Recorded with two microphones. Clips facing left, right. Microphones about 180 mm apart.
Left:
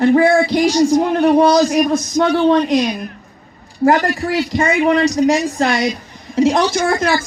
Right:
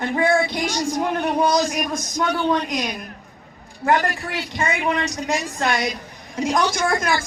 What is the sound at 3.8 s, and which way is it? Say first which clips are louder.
A man's voice: left 6 dB; 35° left (ahead or behind).